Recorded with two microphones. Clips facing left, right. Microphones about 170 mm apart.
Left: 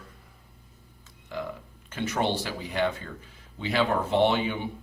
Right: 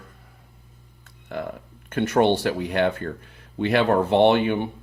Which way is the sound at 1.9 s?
60° right (ahead or behind).